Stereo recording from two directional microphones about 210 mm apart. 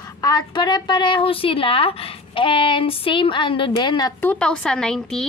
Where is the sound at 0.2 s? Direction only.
20° left (ahead or behind).